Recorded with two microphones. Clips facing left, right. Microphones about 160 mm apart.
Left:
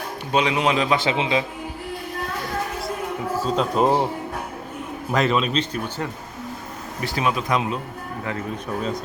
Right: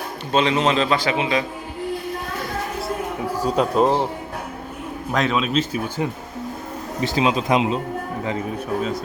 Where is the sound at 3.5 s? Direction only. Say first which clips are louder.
Right 2 dB; centre (ahead or behind).